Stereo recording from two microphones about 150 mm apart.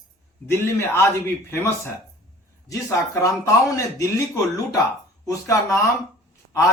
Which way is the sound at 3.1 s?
20° left (ahead or behind).